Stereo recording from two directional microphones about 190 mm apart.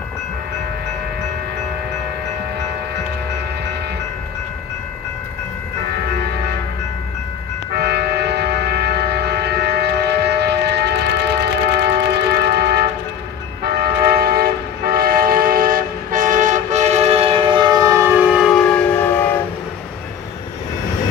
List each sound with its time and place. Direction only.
7.7 s train: 60° right (ahead or behind); by 19.2 s 10° left (ahead or behind)